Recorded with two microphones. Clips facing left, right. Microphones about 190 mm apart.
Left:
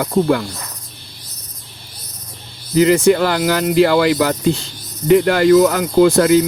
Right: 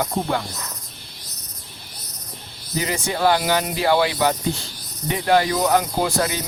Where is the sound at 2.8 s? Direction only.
80° left.